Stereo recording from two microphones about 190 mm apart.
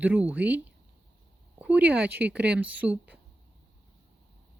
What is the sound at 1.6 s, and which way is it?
Speech, 10° right (ahead or behind).